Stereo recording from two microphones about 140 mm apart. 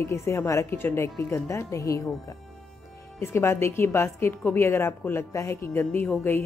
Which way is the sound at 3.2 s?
15° left (ahead or behind).